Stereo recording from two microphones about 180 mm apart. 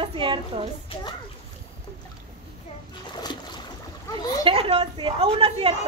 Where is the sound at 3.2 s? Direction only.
25° left (ahead or behind).